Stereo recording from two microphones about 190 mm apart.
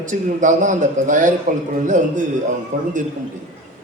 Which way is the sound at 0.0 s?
40° right (ahead or behind).